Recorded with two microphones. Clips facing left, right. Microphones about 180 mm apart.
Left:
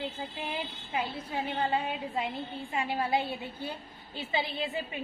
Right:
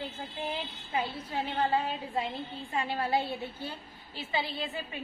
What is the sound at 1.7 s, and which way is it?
A woman's voice, 15° left (ahead or behind).